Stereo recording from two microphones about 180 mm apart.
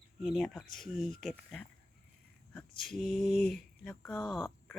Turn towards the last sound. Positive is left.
turn(degrees=0)  # may be behind; listen again after turning